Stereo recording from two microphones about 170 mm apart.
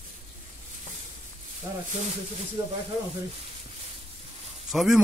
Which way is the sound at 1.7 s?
25° right (ahead or behind).